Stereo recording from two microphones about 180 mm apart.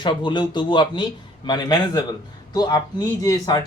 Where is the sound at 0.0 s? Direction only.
25° left (ahead or behind).